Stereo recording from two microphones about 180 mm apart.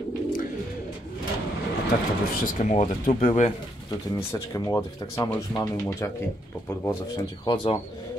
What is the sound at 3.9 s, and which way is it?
Speech, 15° left (ahead or behind).